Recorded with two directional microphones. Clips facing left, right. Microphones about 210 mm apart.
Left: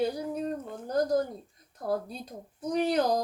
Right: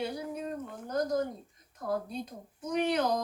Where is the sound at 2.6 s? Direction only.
35° left (ahead or behind).